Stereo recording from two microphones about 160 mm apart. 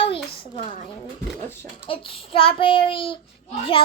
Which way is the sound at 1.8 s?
35° left (ahead or behind).